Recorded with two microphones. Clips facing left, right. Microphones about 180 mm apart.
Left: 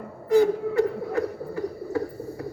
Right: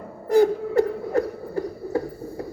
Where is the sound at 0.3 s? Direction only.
40° right (ahead or behind).